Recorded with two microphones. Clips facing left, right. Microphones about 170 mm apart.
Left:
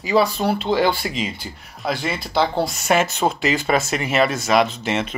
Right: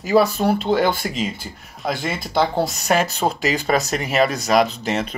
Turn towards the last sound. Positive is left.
turn(degrees=-40)  # may be behind; listen again after turning